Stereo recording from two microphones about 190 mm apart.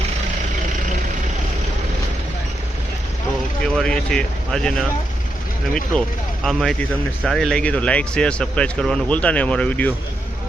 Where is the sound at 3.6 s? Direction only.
5° left (ahead or behind).